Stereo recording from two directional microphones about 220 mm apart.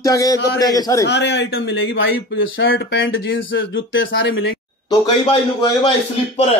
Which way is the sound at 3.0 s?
50° left (ahead or behind).